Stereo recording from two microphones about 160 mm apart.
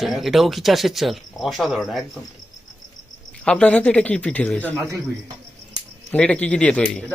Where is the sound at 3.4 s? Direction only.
5° left (ahead or behind).